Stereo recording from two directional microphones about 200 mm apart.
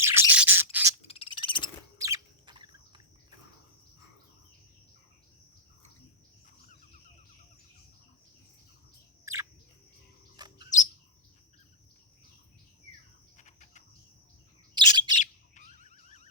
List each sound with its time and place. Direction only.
0.0 s squawk: 10° right (ahead or behind)
1.0 s frog: 25° left (ahead or behind)
2.0 s bird: 15° right (ahead or behind)
9.2 s bird: 15° right (ahead or behind)
13.3 s cricket: 35° left (ahead or behind)
14.8 s bird: 20° right (ahead or behind)
15.1 s bird: 35° left (ahead or behind)